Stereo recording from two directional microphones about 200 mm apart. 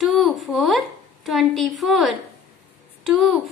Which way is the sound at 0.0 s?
Centre (ahead or behind).